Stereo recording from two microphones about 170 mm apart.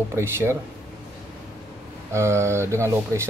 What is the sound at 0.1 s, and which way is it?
Speech, 15° right (ahead or behind).